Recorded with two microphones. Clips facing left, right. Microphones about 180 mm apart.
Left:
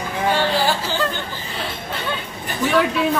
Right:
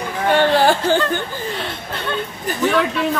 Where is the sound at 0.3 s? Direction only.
55° right (ahead or behind).